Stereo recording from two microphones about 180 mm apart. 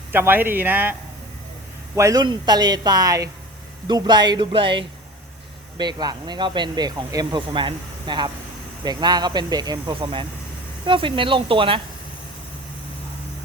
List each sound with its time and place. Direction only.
0.1 s speech: 10° right (ahead or behind)
2.0 s speech: 20° right (ahead or behind)